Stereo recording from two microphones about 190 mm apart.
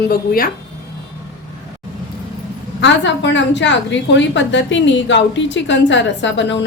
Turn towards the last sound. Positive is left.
turn(degrees=70)  # may be behind; listen again after turning